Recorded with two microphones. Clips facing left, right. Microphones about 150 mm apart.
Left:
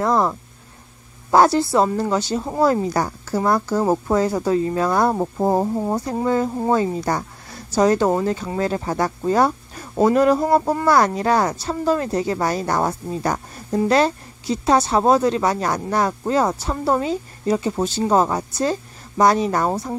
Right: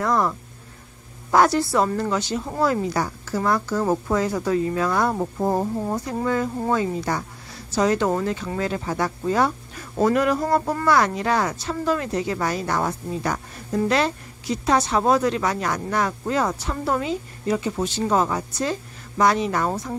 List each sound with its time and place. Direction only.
0.0 s a woman's voice: 30° left (ahead or behind)